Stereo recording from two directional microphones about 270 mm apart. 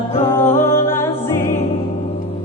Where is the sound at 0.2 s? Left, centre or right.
Centre.